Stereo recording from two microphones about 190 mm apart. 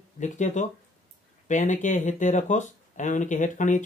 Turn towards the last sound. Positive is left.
turn(degrees=40)  # may be behind; listen again after turning